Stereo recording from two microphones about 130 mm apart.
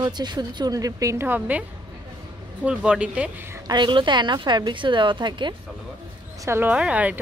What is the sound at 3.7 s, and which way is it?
A woman's voice, 35° right (ahead or behind).